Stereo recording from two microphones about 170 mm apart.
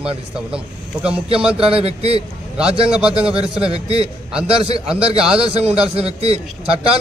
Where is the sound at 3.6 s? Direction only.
35° right (ahead or behind).